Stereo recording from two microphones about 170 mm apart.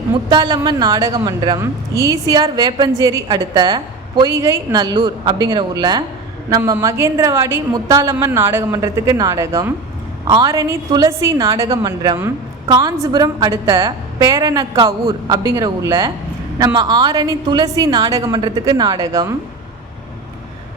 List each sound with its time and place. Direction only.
0.3 s a woman's voice: 25° right (ahead or behind)